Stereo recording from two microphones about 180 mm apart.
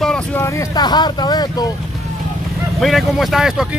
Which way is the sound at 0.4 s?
15° left (ahead or behind).